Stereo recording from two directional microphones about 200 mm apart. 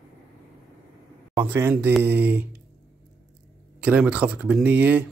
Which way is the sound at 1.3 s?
10° right (ahead or behind).